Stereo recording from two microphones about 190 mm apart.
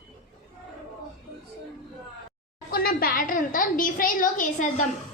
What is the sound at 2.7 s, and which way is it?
A woman's voice, 50° left (ahead or behind).